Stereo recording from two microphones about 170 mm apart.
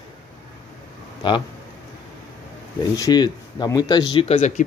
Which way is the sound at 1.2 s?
30° left (ahead or behind).